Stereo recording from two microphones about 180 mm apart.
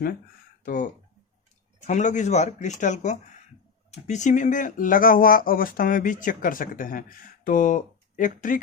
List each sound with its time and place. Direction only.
0.6 s speech: 50° left (ahead or behind)
1.9 s speech: 40° left (ahead or behind)